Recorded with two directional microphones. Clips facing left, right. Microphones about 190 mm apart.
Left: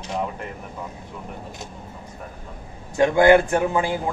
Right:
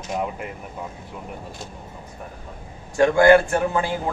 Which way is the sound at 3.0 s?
20° left (ahead or behind).